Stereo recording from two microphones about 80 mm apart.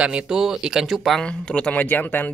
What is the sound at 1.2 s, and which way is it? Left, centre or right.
Speech, centre.